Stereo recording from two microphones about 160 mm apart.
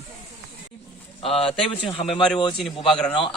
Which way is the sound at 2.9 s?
5° left (ahead or behind).